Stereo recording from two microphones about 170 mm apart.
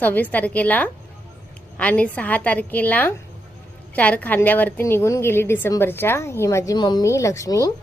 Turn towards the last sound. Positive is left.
turn(degrees=20)  # may be behind; listen again after turning